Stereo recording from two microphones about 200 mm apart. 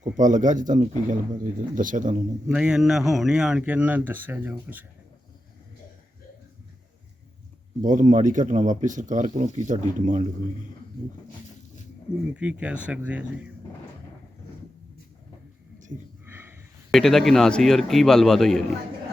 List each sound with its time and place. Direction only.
0.2 s speech: 40° right (ahead or behind)
2.5 s speech: 5° right (ahead or behind)
7.8 s speech: 40° right (ahead or behind)
12.3 s speech: 5° right (ahead or behind)
16.2 s a sound: 10° right (ahead or behind)
16.9 s a man's voice: centre (ahead or behind)